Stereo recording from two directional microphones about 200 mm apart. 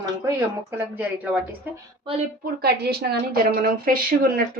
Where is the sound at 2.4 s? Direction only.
50° right (ahead or behind).